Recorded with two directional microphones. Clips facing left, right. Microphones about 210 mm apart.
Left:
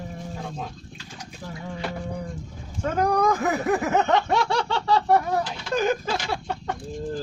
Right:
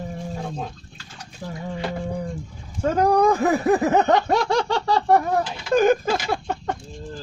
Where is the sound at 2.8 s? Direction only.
30° right (ahead or behind).